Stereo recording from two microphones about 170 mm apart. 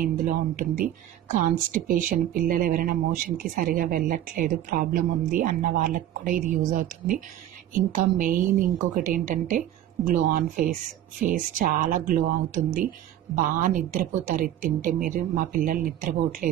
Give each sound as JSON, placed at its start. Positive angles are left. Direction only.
{"t": 0.0, "sound": "speech", "side_deg": -55}